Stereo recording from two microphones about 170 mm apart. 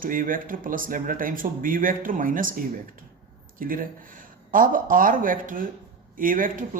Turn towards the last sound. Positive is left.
turn(degrees=-55)  # may be behind; listen again after turning